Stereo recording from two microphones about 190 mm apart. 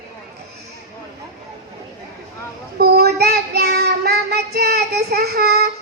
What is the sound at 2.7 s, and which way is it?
Child singing, 55° right (ahead or behind).